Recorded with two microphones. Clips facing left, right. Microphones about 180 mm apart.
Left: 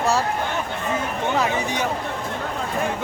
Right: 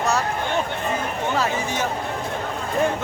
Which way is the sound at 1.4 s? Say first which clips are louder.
Left 1 dB; 15° left (ahead or behind).